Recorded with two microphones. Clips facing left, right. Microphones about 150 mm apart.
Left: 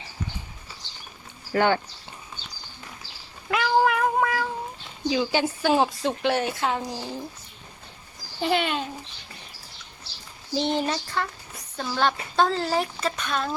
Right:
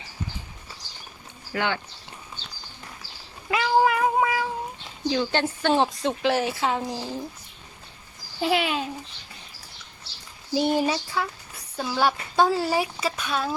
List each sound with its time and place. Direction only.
0.8 s bird flight: 25° left (ahead or behind)
1.5 s speech: 45° left (ahead or behind)
3.5 s cat: centre (ahead or behind)
5.0 s a woman's voice: 5° left (ahead or behind)
8.4 s a woman's voice: centre (ahead or behind)
10.5 s speech: 10° right (ahead or behind)